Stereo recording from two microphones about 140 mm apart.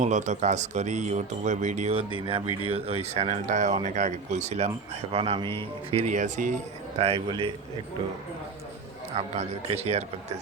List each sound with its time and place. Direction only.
0.0 s speech: 60° right (ahead or behind)
2.0 s speech: 40° right (ahead or behind)
5.1 s speech: 40° right (ahead or behind)
6.1 s speech: 60° right (ahead or behind)
7.0 s speech: 40° right (ahead or behind)
9.1 s speech: 50° right (ahead or behind)